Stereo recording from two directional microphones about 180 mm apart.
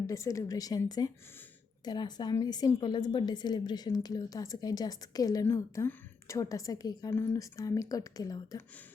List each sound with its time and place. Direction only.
0.1 s a woman's voice: 15° left (ahead or behind)